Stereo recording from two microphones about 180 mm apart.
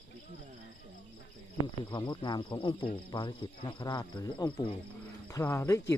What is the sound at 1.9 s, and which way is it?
Speech, 25° left (ahead or behind).